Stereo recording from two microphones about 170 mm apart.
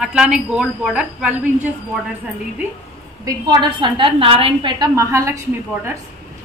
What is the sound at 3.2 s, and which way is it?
A woman's voice, 20° right (ahead or behind).